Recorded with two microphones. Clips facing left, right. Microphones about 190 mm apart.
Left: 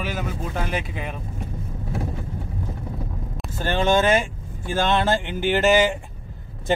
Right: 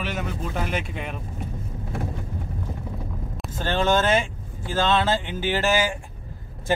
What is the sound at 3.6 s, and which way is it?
Speech, 15° left (ahead or behind).